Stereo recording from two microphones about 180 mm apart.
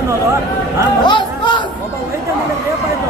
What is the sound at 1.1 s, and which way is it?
Chatter, 25° left (ahead or behind).